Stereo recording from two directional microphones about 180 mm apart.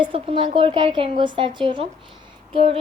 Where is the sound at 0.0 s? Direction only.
30° right (ahead or behind).